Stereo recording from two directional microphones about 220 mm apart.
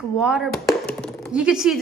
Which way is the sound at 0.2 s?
Centre (ahead or behind).